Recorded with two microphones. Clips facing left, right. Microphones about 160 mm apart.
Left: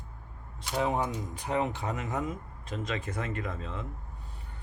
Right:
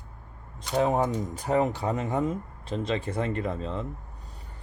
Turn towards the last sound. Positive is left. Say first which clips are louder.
# right 6 dB
turn(degrees=-35)  # may be behind; listen again after turning